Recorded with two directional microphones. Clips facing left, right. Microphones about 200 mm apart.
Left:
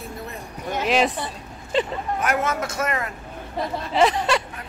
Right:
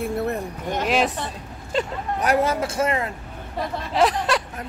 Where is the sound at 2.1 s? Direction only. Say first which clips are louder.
Right 4 dB; 35° right (ahead or behind).